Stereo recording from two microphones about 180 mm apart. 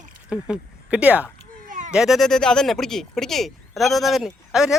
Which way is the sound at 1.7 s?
45° right (ahead or behind).